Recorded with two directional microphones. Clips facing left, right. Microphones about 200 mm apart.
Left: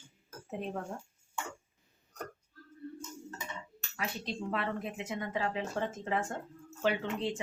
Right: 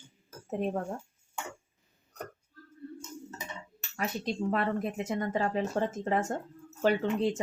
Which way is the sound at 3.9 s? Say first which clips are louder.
Right 5 dB; 45° right (ahead or behind).